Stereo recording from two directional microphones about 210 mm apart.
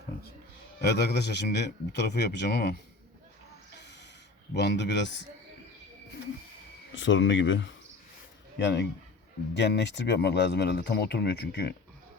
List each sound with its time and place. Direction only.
0.8 s speech: 50° left (ahead or behind)
4.5 s speech: 55° left (ahead or behind)
6.9 s speech: 60° left (ahead or behind)